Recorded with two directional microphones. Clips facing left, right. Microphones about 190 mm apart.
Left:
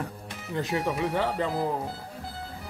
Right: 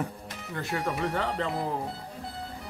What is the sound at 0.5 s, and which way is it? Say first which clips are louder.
Speech: left 4 dB; 20° left (ahead or behind).